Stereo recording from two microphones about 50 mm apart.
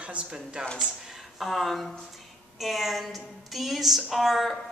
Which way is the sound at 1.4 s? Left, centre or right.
Centre.